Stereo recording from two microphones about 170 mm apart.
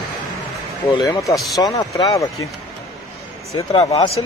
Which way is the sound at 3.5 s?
30° left (ahead or behind).